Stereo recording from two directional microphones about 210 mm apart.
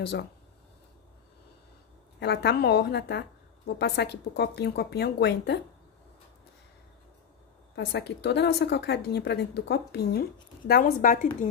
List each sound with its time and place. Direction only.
2.1 s a woman's voice: 55° left (ahead or behind)
7.7 s a woman's voice: 55° left (ahead or behind); by 11.2 s 40° left (ahead or behind)